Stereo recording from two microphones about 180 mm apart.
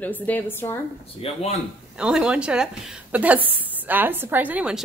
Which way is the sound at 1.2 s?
30° left (ahead or behind).